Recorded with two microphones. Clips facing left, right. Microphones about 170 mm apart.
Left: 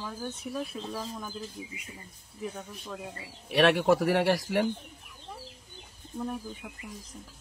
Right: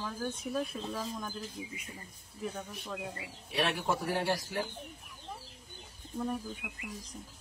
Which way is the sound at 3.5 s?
75° left (ahead or behind).